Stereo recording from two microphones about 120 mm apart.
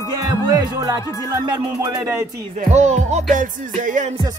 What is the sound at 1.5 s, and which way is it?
Speech, 25° right (ahead or behind).